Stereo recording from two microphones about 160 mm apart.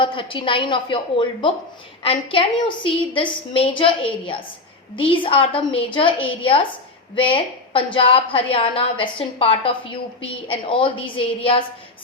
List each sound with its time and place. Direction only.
0.0 s a woman's voice: 30° left (ahead or behind)